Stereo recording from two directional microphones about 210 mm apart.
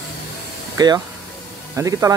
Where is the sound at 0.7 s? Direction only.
20° right (ahead or behind).